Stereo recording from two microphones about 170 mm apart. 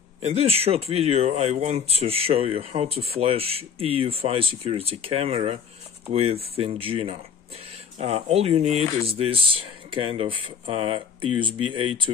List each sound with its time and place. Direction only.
0.2 s speech: 35° right (ahead or behind)